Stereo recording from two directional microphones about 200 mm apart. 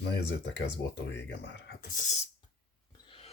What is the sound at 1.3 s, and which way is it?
Speech, 60° left (ahead or behind).